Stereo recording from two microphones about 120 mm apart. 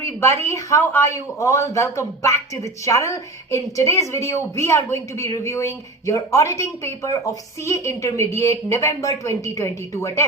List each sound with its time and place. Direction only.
0.0 s speech: 20° left (ahead or behind)